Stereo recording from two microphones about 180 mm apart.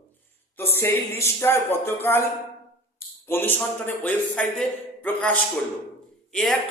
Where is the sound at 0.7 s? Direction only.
15° left (ahead or behind).